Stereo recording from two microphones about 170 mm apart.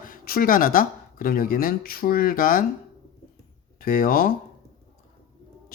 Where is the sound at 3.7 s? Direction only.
60° left (ahead or behind).